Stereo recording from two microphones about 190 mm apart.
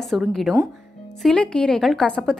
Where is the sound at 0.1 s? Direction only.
Centre (ahead or behind).